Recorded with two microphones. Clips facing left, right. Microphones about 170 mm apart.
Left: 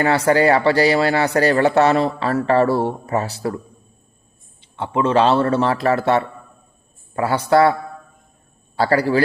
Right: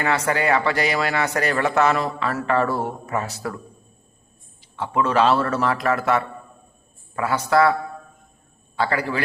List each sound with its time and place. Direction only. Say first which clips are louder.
0.0 s speech: left 7 dB; 30° left (ahead or behind)
4.6 s a man's voice: left 3 dB; 25° left (ahead or behind)